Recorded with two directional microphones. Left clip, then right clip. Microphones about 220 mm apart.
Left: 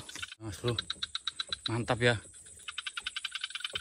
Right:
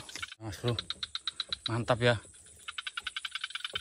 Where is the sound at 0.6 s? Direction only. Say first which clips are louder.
Left 1 dB; 45° right (ahead or behind).